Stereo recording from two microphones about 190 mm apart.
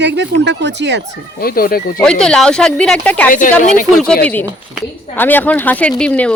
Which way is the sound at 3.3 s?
45° left (ahead or behind).